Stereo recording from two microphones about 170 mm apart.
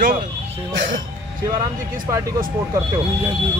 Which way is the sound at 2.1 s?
20° right (ahead or behind).